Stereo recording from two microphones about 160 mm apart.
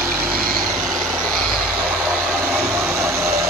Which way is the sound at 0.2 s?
65° right (ahead or behind).